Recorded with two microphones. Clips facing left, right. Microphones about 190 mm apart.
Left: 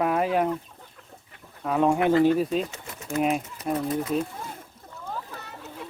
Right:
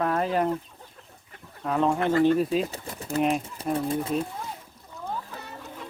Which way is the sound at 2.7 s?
35° right (ahead or behind).